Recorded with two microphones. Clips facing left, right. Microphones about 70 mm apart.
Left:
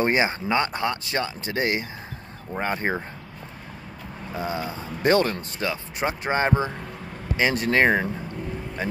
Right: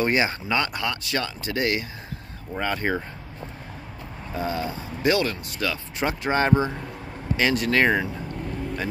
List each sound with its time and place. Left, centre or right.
0.0 s speech: left
4.4 s speech: left
5.0 s speech: left
5.6 s speech: left